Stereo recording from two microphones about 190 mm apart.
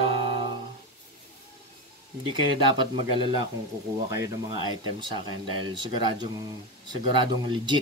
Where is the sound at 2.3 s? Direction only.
25° right (ahead or behind).